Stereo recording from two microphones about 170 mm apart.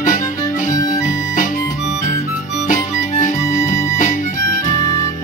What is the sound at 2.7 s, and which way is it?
Music, 50° left (ahead or behind).